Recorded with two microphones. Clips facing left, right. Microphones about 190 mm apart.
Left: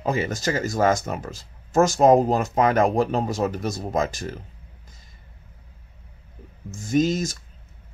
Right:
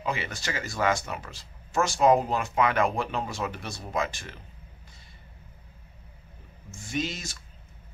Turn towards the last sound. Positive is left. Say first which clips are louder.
# left 11 dB
turn(degrees=45)  # may be behind; listen again after turning